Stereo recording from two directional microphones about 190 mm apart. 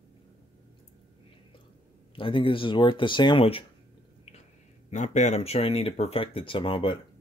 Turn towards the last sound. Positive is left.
turn(degrees=25)  # may be behind; listen again after turning